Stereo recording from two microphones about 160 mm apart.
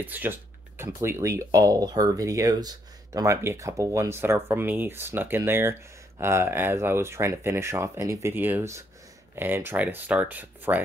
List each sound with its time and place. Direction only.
0.0 s speech: 10° right (ahead or behind)